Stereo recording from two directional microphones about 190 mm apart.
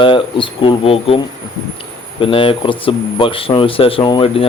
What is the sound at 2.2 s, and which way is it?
Speech, 30° left (ahead or behind).